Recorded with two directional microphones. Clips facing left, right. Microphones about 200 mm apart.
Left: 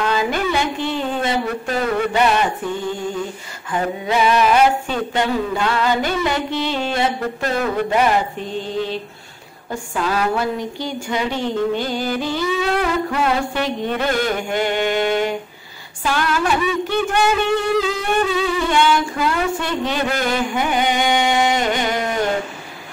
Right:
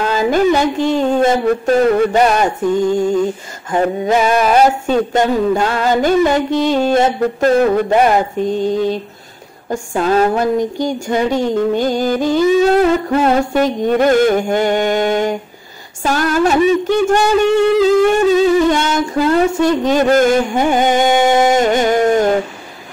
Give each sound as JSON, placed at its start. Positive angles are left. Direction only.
{"t": 0.0, "sound": "a woman's voice", "side_deg": -40}
{"t": 3.7, "sound": "a woman's voice", "side_deg": -45}